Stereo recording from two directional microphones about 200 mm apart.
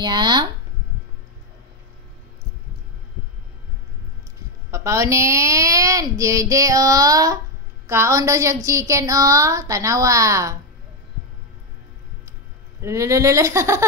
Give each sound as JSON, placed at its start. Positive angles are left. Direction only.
{"t": 0.0, "sound": "speech", "side_deg": -20}
{"t": 4.6, "sound": "a woman's voice", "side_deg": -15}
{"t": 12.8, "sound": "a woman's voice", "side_deg": -15}